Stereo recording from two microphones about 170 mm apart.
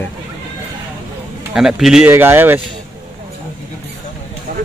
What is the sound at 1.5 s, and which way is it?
Speech, 5° right (ahead or behind).